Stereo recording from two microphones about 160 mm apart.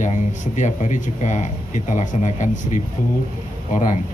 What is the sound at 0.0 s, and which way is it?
Speech, 50° left (ahead or behind).